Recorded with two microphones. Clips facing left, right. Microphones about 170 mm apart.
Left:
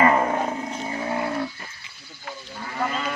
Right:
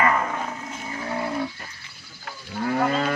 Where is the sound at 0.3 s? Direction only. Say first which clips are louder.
Left 5 dB; 35° left (ahead or behind).